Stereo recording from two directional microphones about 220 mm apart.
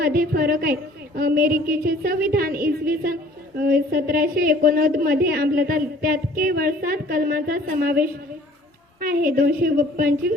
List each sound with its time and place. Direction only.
0.0 s a woman's voice: 45° right (ahead or behind)
9.0 s a woman's voice: 40° right (ahead or behind)